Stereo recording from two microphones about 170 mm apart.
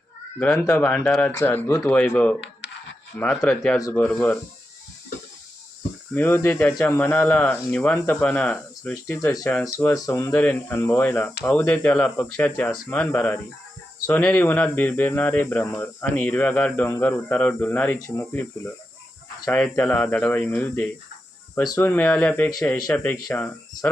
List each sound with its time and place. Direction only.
0.6 s speech: 5° left (ahead or behind)
3.8 s speech: 20° left (ahead or behind)
4.0 s speech: 5° left (ahead or behind)
6.1 s speech: 15° left (ahead or behind)